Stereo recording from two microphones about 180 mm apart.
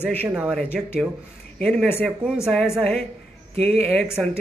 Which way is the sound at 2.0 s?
Centre (ahead or behind).